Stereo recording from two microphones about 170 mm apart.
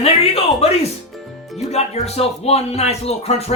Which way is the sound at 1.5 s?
40° left (ahead or behind).